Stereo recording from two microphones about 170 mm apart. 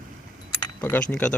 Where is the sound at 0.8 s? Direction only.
10° left (ahead or behind).